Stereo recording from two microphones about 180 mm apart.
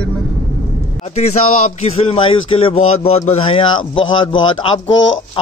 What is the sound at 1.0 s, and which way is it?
Speech, 40° left (ahead or behind).